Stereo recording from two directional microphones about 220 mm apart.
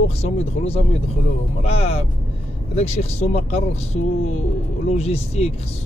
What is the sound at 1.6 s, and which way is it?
Speech, 30° left (ahead or behind).